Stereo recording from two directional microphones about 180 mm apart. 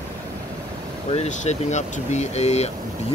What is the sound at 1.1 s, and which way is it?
Speech, 40° left (ahead or behind).